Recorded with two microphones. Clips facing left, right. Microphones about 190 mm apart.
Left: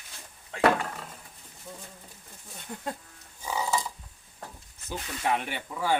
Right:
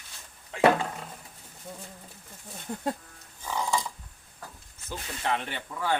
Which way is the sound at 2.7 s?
45° right (ahead or behind).